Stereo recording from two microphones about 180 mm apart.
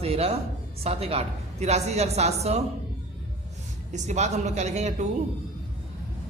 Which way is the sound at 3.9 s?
40° right (ahead or behind).